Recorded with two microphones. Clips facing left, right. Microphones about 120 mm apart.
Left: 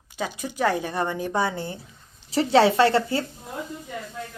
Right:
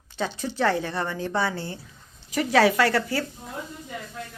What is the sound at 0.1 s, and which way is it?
A woman's voice, 10° left (ahead or behind).